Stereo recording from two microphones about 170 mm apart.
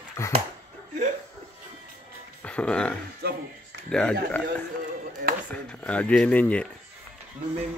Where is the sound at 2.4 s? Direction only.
5° left (ahead or behind).